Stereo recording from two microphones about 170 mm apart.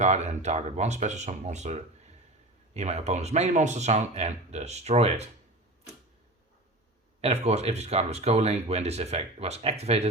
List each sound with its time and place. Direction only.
0.0 s speech: 40° right (ahead or behind)
7.2 s speech: 40° right (ahead or behind)